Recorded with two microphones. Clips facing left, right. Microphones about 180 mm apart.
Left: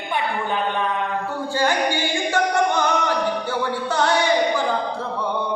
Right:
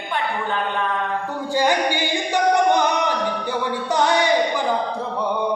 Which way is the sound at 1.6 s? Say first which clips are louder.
Right 2 dB; 15° right (ahead or behind).